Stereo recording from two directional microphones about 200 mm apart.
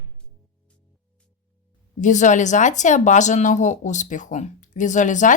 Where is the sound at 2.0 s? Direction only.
35° left (ahead or behind).